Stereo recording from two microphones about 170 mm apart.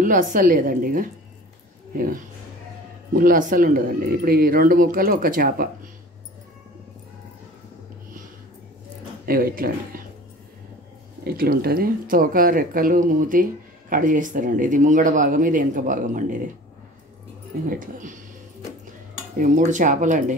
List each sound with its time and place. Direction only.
0.0 s speech: 50° right (ahead or behind)
3.1 s speech: 55° right (ahead or behind)
9.2 s speech: 60° right (ahead or behind)
11.2 s speech: 60° right (ahead or behind)
17.6 s speech: 50° right (ahead or behind)
19.3 s speech: 45° right (ahead or behind)